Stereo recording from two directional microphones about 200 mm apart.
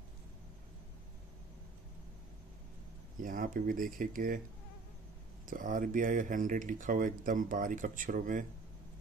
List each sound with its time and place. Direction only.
3.2 s speech: 45° right (ahead or behind)
5.5 s speech: 45° right (ahead or behind)